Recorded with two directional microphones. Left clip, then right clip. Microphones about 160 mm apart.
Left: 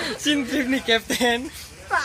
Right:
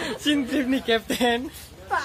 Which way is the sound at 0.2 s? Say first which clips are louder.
Left 1 dB; 10° left (ahead or behind).